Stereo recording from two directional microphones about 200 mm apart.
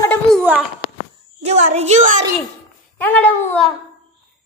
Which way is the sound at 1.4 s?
35° right (ahead or behind).